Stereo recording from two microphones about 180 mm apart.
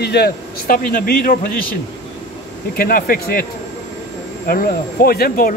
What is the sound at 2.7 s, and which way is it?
Speech, 55° left (ahead or behind).